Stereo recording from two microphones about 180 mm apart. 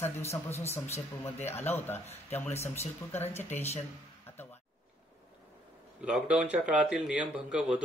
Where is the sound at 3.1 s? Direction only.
10° left (ahead or behind).